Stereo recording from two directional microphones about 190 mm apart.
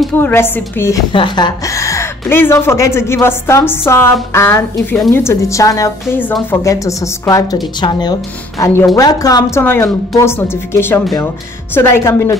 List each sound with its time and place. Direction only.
0.0 s a woman's voice: 10° left (ahead or behind)
1.1 s a woman's voice: 25° left (ahead or behind)
4.9 s a woman's voice: centre (ahead or behind)
5.2 s a woman's voice: 15° left (ahead or behind)